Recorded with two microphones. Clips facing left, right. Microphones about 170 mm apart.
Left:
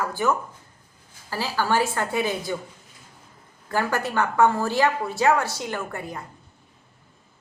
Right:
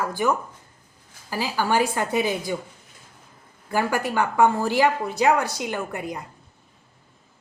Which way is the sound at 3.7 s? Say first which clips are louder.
Right 1 dB; 10° right (ahead or behind).